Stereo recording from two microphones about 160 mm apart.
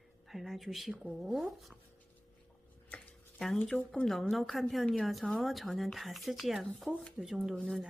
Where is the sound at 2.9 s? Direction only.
5° left (ahead or behind).